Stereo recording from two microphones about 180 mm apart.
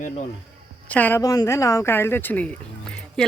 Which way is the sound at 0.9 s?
10° left (ahead or behind).